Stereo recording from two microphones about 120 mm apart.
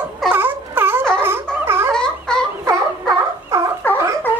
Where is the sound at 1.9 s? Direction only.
5° left (ahead or behind).